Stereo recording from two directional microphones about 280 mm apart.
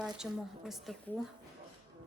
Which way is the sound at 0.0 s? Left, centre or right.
Centre.